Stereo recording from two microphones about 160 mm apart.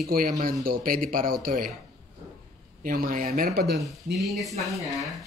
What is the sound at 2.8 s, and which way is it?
Speech, 60° right (ahead or behind).